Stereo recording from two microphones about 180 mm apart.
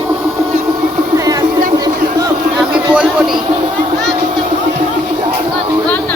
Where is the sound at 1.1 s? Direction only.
20° right (ahead or behind).